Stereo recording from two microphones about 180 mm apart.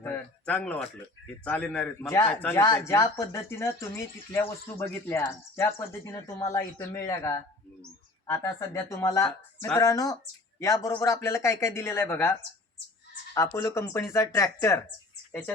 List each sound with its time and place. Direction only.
0.0 s a sound: 10° left (ahead or behind)
1.5 s a man's voice: 10° left (ahead or behind)
13.3 s a man's voice: 15° left (ahead or behind)